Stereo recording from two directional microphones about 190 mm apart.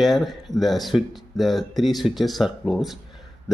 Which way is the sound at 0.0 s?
Centre (ahead or behind).